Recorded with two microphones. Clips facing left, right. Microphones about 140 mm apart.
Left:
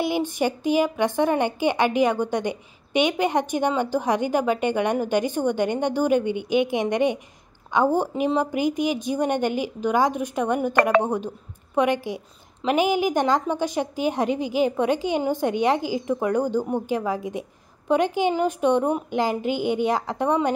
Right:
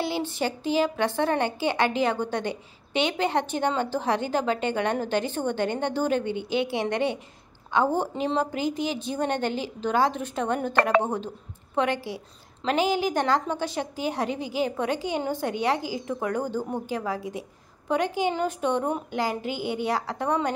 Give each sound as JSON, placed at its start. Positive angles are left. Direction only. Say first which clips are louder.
{"t": 0.0, "sound": "a woman's voice", "louder": "left 4 dB", "side_deg": 15}